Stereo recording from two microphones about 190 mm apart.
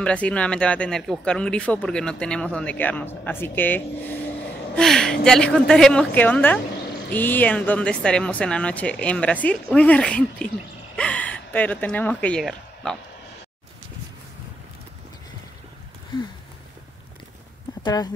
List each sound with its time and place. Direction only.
0.0 s speech: 5° left (ahead or behind)
17.8 s speech: 20° left (ahead or behind)